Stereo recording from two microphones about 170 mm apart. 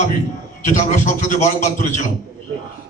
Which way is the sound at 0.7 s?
45° left (ahead or behind).